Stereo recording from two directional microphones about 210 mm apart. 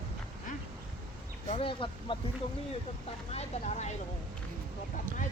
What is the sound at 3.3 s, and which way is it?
Speech, 30° left (ahead or behind).